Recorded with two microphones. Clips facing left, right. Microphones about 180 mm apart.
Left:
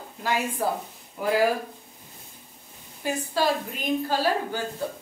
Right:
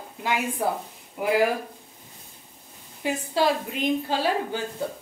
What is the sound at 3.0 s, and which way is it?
A woman's voice, 25° right (ahead or behind).